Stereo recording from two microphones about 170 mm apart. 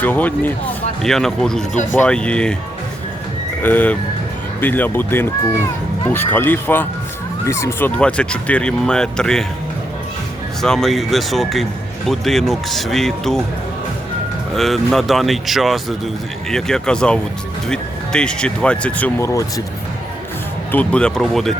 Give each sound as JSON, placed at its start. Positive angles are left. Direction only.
{"t": 0.0, "sound": "speech", "side_deg": 10}
{"t": 1.7, "sound": "speech", "side_deg": 45}
{"t": 2.0, "sound": "speech", "side_deg": 5}
{"t": 3.6, "sound": "speech", "side_deg": 10}
{"t": 10.6, "sound": "speech", "side_deg": 0}
{"t": 14.5, "sound": "speech", "side_deg": 0}
{"t": 20.7, "sound": "speech", "side_deg": 5}